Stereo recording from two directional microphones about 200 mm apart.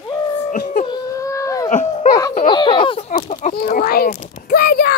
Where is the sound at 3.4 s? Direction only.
40° left (ahead or behind).